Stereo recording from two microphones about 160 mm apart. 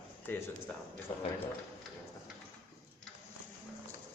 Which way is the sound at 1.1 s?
45° left (ahead or behind).